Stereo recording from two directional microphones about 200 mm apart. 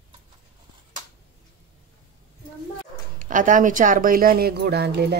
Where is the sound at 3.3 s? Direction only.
40° right (ahead or behind).